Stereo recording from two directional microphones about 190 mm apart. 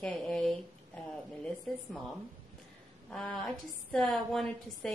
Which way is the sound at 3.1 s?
Centre (ahead or behind).